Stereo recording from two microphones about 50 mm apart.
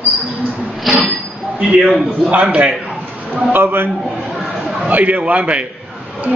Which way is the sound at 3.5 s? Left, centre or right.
Right.